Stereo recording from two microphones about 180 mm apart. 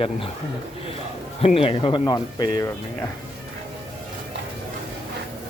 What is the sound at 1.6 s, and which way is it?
Speech, 30° left (ahead or behind).